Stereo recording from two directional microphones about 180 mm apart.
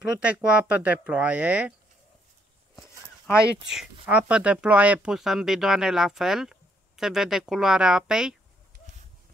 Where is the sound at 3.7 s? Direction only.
5° right (ahead or behind).